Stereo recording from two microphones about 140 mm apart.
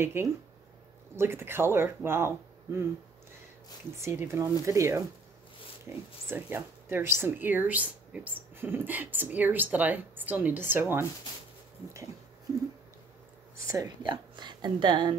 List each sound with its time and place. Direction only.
0.0 s speech: 20° right (ahead or behind)
3.9 s speech: 20° right (ahead or behind)
13.7 s a woman's voice: 25° right (ahead or behind)